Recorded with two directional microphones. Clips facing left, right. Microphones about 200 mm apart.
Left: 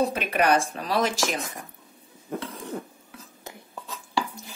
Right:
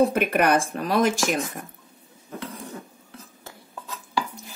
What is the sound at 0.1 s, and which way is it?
Speech, 55° right (ahead or behind).